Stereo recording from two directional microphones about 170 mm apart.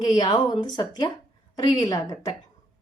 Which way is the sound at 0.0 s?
25° left (ahead or behind).